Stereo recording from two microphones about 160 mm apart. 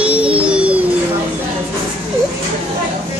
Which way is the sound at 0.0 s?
10° right (ahead or behind).